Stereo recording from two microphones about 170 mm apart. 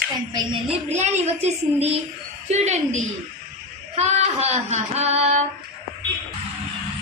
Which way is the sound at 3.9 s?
40° right (ahead or behind).